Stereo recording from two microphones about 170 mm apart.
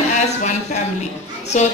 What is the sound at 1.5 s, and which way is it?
Speech, 45° left (ahead or behind).